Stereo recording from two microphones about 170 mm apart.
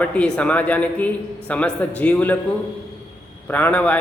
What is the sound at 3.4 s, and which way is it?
Speech, 10° left (ahead or behind).